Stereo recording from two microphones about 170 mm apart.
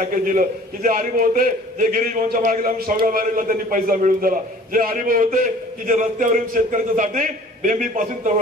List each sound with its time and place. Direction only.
0.0 s a man's voice: 50° right (ahead or behind)